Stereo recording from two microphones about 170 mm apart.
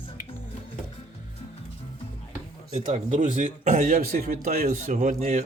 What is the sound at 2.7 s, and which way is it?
A man's voice, 40° right (ahead or behind).